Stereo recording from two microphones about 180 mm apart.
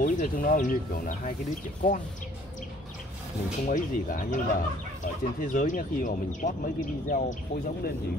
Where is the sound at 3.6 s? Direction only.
45° left (ahead or behind).